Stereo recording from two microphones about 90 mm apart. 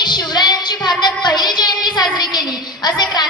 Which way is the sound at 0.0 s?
55° left (ahead or behind).